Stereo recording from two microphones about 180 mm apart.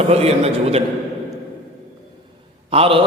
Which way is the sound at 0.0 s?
35° right (ahead or behind).